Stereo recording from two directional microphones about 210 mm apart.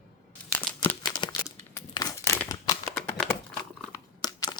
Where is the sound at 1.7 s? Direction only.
15° left (ahead or behind).